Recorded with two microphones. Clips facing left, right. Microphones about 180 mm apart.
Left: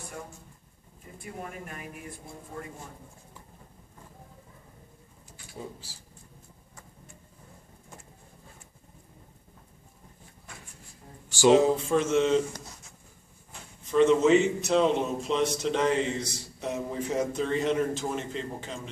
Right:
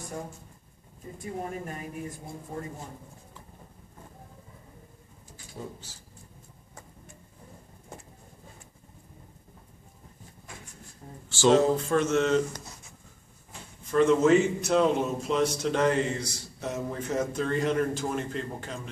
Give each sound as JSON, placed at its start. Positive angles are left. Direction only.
{"t": 1.4, "sound": "a woman's voice", "side_deg": -35}
{"t": 5.6, "sound": "speech", "side_deg": 15}
{"t": 11.2, "sound": "a man's voice", "side_deg": 10}
{"t": 13.5, "sound": "a man's voice", "side_deg": 0}